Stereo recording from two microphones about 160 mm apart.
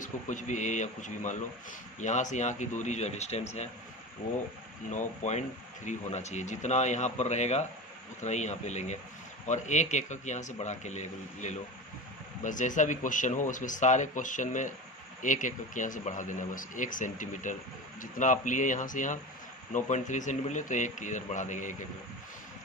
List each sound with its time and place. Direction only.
0.0 s speech: 50° left (ahead or behind)
4.9 s speech: 50° left (ahead or behind)